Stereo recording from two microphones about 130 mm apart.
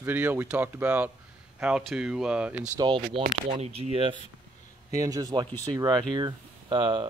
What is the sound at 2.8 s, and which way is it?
Speech, 40° right (ahead or behind).